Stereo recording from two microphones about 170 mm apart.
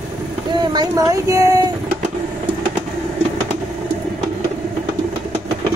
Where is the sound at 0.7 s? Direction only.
20° right (ahead or behind).